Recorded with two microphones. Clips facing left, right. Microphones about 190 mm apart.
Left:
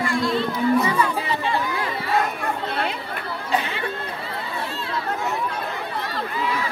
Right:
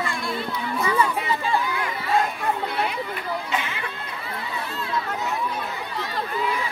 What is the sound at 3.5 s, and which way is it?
Chatter, 35° left (ahead or behind).